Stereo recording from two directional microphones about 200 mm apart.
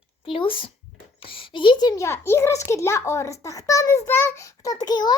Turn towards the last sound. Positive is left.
turn(degrees=20)  # may be behind; listen again after turning